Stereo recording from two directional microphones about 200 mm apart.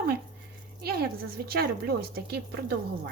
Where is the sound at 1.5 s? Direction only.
50° right (ahead or behind).